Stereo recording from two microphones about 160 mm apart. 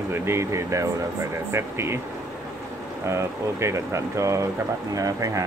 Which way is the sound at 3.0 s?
20° right (ahead or behind).